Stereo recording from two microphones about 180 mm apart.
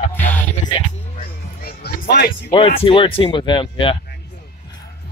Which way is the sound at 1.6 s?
60° left (ahead or behind).